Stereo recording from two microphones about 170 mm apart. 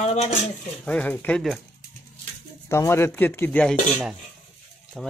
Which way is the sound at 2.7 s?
15° left (ahead or behind).